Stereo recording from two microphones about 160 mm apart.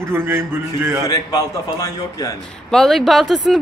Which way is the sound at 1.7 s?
20° left (ahead or behind).